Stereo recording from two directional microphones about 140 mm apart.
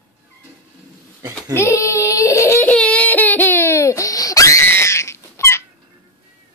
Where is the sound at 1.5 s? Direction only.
20° left (ahead or behind).